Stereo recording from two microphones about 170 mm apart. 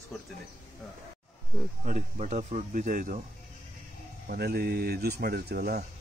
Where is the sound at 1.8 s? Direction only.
45° right (ahead or behind).